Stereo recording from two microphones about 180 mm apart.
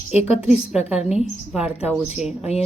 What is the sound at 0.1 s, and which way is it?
Speech, 35° left (ahead or behind).